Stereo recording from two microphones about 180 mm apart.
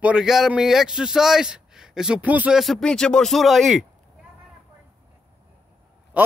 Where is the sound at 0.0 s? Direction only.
5° right (ahead or behind).